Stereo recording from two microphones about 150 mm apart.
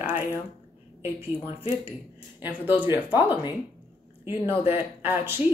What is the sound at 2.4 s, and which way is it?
Speech, 10° right (ahead or behind).